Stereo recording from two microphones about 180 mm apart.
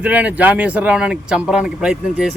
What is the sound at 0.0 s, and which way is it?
A man's voice, 10° right (ahead or behind).